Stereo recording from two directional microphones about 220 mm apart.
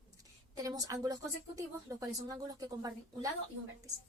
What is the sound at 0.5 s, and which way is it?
Speech, 15° right (ahead or behind).